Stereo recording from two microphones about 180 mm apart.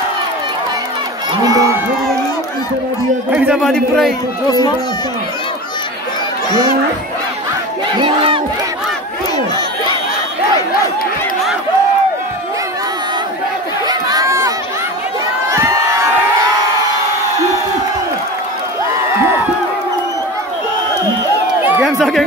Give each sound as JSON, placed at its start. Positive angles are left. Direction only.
{"t": 1.3, "sound": "crowd", "side_deg": -20}
{"t": 3.3, "sound": "a man's voice", "side_deg": -5}
{"t": 3.7, "sound": "a man's voice", "side_deg": 5}
{"t": 4.5, "sound": "speech", "side_deg": 20}
{"t": 8.0, "sound": "crowd", "side_deg": -30}
{"t": 13.8, "sound": "chatter", "side_deg": -20}
{"t": 21.8, "sound": "chatter", "side_deg": 0}